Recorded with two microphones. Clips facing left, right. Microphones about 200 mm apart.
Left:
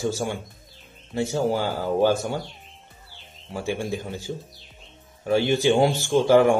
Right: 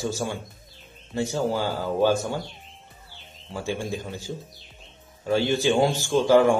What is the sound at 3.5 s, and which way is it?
Speech, 15° left (ahead or behind).